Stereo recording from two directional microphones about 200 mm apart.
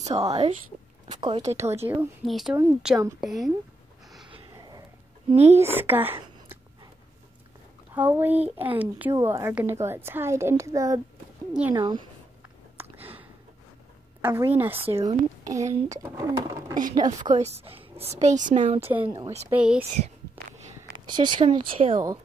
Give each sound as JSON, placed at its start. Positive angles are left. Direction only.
{"t": 0.0, "sound": "a woman's voice", "side_deg": -15}
{"t": 1.6, "sound": "a woman's voice", "side_deg": -10}
{"t": 2.2, "sound": "a woman's voice", "side_deg": 0}
{"t": 4.3, "sound": "a sound", "side_deg": -25}
{"t": 5.3, "sound": "a woman's voice", "side_deg": -30}
{"t": 5.6, "sound": "a woman's voice", "side_deg": -10}
{"t": 7.9, "sound": "a woman's voice", "side_deg": -10}
{"t": 14.2, "sound": "a woman's voice", "side_deg": -10}
{"t": 17.4, "sound": "a woman's voice", "side_deg": -30}
{"t": 18.9, "sound": "a woman's voice", "side_deg": -10}
{"t": 21.0, "sound": "speech", "side_deg": -20}